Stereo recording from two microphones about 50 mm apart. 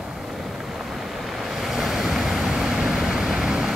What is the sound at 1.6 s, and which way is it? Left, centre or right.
Vehicle, centre.